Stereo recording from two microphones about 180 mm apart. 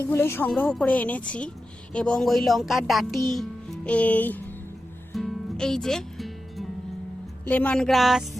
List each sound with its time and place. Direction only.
0.0 s speech: 15° left (ahead or behind)
5.1 s music: centre (ahead or behind)
7.4 s speech: 10° left (ahead or behind)